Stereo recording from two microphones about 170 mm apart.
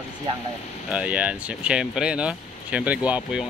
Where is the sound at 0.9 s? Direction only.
5° right (ahead or behind).